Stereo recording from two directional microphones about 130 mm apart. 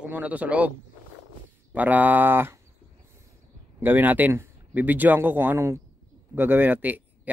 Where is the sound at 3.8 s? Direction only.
15° right (ahead or behind).